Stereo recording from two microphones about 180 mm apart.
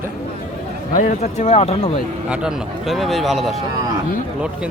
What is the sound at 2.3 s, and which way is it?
Speech, centre (ahead or behind).